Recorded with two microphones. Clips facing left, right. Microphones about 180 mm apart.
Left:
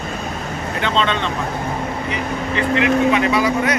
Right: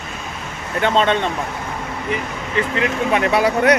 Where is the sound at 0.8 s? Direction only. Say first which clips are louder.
Right 4 dB; 50° right (ahead or behind).